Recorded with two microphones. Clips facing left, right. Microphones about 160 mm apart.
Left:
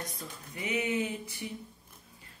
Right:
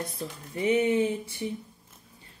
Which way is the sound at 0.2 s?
30° right (ahead or behind).